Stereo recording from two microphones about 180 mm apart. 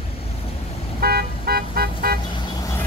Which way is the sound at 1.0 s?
60° right (ahead or behind).